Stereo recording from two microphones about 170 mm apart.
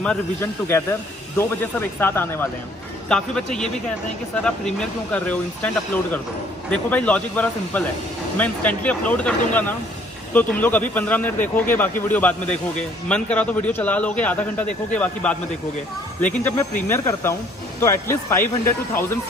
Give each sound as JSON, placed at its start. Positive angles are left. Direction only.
{"t": 0.0, "sound": "a man's voice", "side_deg": 10}
{"t": 6.7, "sound": "a man's voice", "side_deg": 5}